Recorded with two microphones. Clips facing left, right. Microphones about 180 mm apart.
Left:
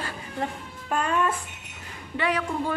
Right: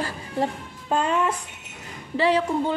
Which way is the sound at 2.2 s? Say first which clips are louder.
Right 6 dB; 30° right (ahead or behind).